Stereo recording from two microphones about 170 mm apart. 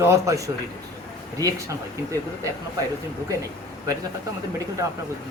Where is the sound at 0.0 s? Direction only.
15° right (ahead or behind).